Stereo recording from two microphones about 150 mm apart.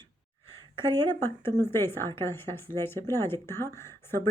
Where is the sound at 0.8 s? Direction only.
15° left (ahead or behind).